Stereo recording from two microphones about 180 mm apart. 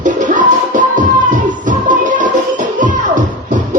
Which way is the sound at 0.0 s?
45° right (ahead or behind).